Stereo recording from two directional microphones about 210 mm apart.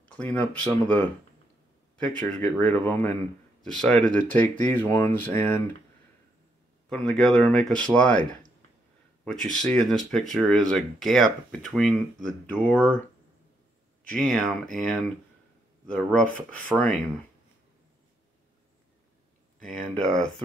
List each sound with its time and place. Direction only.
0.0 s speech: 5° left (ahead or behind)
2.4 s speech: 5° left (ahead or behind)
6.9 s speech: centre (ahead or behind)
9.2 s speech: centre (ahead or behind)
14.1 s speech: 5° left (ahead or behind)
19.6 s speech: 5° left (ahead or behind)